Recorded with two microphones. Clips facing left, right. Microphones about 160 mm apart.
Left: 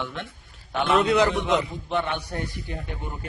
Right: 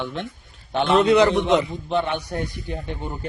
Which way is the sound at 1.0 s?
Centre (ahead or behind).